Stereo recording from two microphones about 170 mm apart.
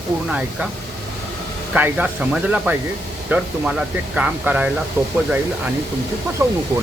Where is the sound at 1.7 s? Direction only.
10° right (ahead or behind).